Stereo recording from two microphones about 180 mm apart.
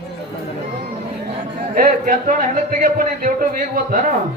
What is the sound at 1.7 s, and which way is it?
A man's voice, 50° right (ahead or behind).